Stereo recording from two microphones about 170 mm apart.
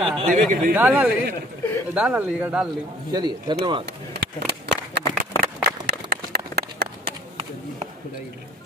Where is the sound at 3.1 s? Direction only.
25° right (ahead or behind).